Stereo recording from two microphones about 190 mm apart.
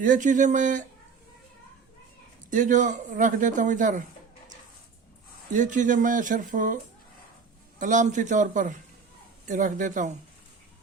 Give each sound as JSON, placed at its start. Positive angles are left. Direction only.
{"t": 0.0, "sound": "speech", "side_deg": -40}
{"t": 2.5, "sound": "speech", "side_deg": -45}
{"t": 5.5, "sound": "speech", "side_deg": -40}
{"t": 7.8, "sound": "speech", "side_deg": -40}